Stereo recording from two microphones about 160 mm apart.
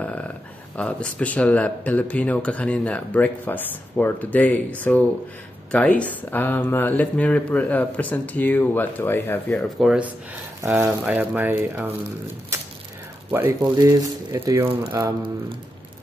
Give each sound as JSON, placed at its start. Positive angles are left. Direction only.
{"t": 0.7, "sound": "speech", "side_deg": 10}
{"t": 9.5, "sound": "speech", "side_deg": 0}
{"t": 10.6, "sound": "speech", "side_deg": -15}
{"t": 12.5, "sound": "mechanisms", "side_deg": -15}
{"t": 13.3, "sound": "speech", "side_deg": -15}